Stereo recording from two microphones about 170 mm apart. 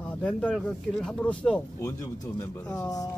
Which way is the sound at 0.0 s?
10° left (ahead or behind).